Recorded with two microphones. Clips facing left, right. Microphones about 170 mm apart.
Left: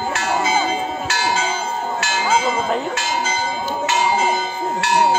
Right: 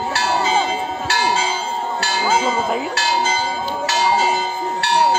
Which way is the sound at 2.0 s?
35° right (ahead or behind).